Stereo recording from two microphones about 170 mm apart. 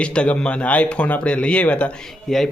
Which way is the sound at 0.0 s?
5° left (ahead or behind).